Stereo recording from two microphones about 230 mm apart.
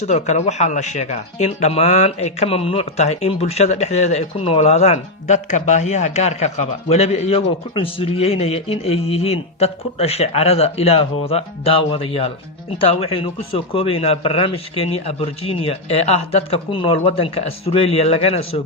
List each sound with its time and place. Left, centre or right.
0.0 s speech: left